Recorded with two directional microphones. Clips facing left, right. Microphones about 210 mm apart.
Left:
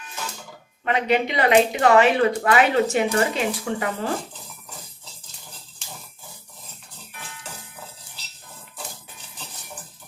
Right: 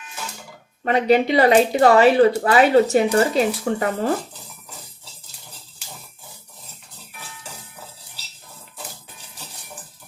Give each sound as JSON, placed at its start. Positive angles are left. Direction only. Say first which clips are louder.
{"t": 0.9, "sound": "speech", "louder": "right 5 dB", "side_deg": -35}